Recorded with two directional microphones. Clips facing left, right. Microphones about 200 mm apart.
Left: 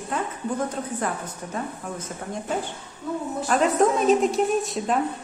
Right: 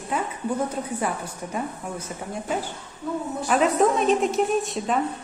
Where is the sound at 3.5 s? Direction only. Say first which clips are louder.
Even; centre (ahead or behind).